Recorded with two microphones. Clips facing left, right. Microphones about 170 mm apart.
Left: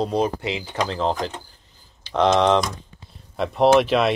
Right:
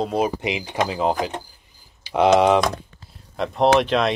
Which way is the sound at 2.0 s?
10° right (ahead or behind).